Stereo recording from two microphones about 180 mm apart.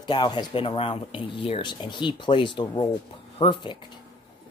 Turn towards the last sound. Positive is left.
turn(degrees=25)  # may be behind; listen again after turning